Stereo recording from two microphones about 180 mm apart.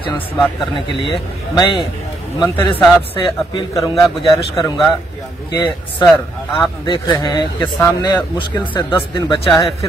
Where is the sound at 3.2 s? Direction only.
25° left (ahead or behind).